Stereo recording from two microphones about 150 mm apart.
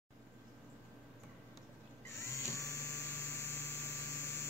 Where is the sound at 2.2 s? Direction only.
20° left (ahead or behind).